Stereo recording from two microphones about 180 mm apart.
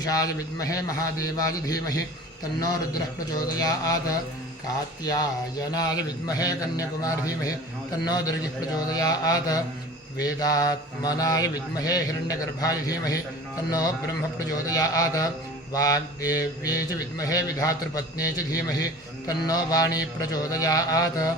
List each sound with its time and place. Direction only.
0.0 s mantra: 20° left (ahead or behind)
3.3 s mantra: 20° left (ahead or behind)